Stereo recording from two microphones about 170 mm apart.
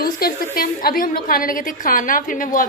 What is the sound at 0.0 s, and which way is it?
A woman's voice, 60° left (ahead or behind).